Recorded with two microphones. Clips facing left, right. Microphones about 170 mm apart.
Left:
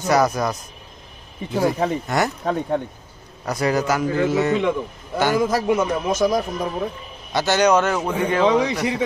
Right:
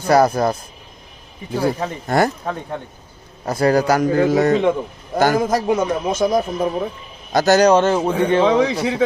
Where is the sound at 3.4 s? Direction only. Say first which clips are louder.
Right 5 dB; 30° right (ahead or behind).